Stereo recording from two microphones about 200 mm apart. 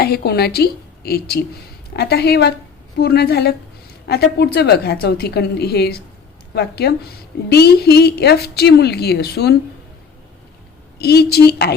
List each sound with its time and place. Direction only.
0.0 s a woman's voice: 50° left (ahead or behind)
11.0 s a woman's voice: 55° left (ahead or behind)